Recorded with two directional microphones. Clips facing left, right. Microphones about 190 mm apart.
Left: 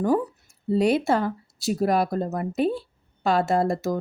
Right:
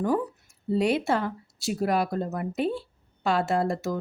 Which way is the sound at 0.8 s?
40° left (ahead or behind).